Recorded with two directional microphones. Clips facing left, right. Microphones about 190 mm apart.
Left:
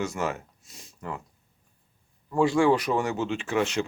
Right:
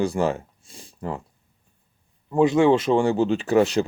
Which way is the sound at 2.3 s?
20° right (ahead or behind).